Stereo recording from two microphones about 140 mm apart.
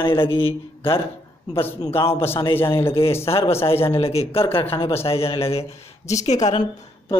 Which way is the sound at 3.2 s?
45° left (ahead or behind).